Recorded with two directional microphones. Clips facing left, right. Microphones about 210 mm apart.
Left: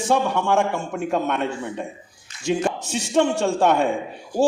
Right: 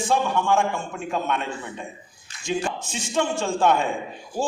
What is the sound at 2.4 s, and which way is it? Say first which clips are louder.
A man's voice: left 4 dB; 65° left (ahead or behind).